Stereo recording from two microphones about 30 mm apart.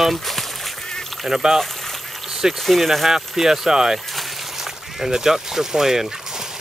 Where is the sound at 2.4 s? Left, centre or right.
Right.